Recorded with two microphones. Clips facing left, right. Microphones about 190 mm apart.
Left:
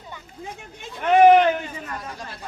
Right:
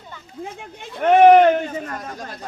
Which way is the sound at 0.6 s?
55° right (ahead or behind).